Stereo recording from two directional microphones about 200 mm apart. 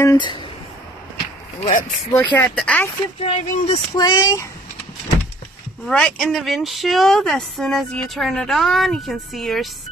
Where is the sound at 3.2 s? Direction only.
30° left (ahead or behind).